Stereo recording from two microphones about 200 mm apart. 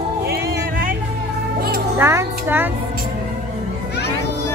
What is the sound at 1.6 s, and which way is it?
Music, 50° right (ahead or behind).